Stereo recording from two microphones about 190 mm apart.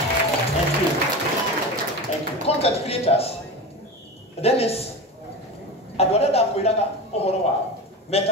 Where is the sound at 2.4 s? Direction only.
30° left (ahead or behind).